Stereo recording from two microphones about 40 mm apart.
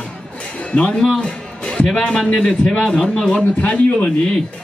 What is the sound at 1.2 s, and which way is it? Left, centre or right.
Music, left.